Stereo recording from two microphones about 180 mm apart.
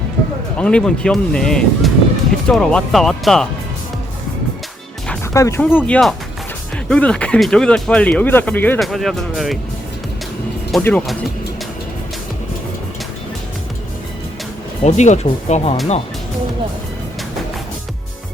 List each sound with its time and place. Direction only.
0.5 s speech: 5° left (ahead or behind)
5.3 s speech: 15° left (ahead or behind); by 9.6 s centre (ahead or behind)
10.8 s speech: 10° left (ahead or behind)
14.8 s speech: 40° left (ahead or behind)